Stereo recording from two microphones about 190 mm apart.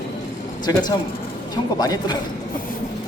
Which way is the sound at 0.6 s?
20° left (ahead or behind).